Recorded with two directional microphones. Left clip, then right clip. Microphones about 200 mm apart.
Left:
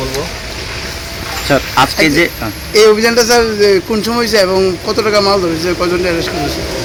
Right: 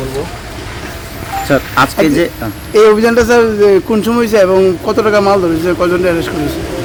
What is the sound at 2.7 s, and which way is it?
A man's voice, 50° right (ahead or behind).